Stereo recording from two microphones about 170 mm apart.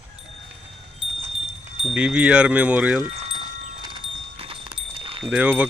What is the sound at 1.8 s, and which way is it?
Speech, 5° right (ahead or behind).